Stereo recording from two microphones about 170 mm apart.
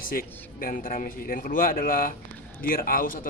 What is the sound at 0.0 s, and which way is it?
A man's voice, 55° left (ahead or behind).